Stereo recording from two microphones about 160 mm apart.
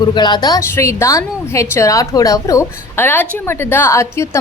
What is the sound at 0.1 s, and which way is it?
A woman's voice, 25° left (ahead or behind).